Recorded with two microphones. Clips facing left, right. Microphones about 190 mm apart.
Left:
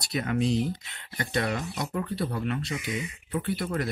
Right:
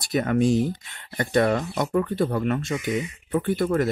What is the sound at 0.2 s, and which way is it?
Speech, 45° right (ahead or behind).